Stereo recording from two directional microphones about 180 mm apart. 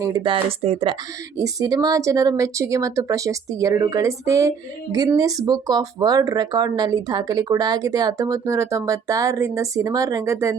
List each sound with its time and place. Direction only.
0.0 s speech: 20° right (ahead or behind)
1.4 s speech: 20° right (ahead or behind)